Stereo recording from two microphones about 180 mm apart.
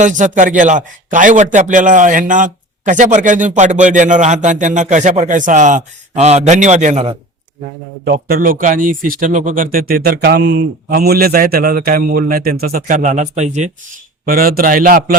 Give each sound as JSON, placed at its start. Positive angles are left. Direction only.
{"t": 0.0, "sound": "a man's voice", "side_deg": -45}
{"t": 8.0, "sound": "a man's voice", "side_deg": -55}
{"t": 9.7, "sound": "a man's voice", "side_deg": -55}
{"t": 14.3, "sound": "a man's voice", "side_deg": -55}